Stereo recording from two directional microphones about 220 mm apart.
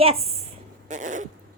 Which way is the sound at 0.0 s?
25° right (ahead or behind).